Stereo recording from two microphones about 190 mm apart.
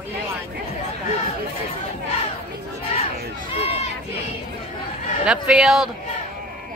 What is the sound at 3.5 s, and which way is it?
Run, 30° left (ahead or behind).